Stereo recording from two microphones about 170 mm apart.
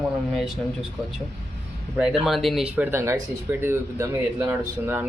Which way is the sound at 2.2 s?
Centre (ahead or behind).